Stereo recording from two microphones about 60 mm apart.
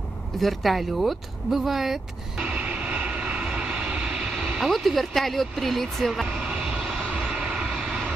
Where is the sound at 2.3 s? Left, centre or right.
Centre.